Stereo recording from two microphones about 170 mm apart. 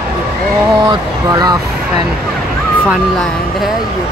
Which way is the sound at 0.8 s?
25° right (ahead or behind).